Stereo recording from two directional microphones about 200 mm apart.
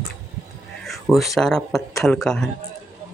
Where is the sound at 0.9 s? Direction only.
Centre (ahead or behind).